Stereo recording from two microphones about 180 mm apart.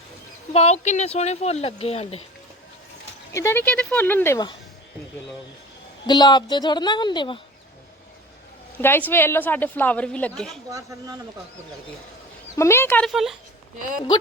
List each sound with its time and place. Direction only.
0.5 s speech: 35° left (ahead or behind)
3.3 s a woman's voice: 15° left (ahead or behind)
6.1 s a woman's voice: 25° left (ahead or behind)
8.8 s a woman's voice: 10° left (ahead or behind)
10.7 s speech: 20° right (ahead or behind)
12.5 s a woman's voice: 15° left (ahead or behind)
13.1 s speech: centre (ahead or behind)